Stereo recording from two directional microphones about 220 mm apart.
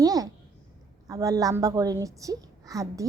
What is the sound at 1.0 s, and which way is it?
A woman's voice, 15° right (ahead or behind).